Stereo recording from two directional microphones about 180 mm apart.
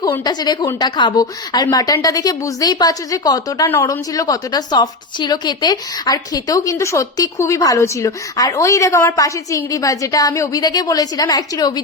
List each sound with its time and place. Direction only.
0.0 s a woman's voice: 20° left (ahead or behind)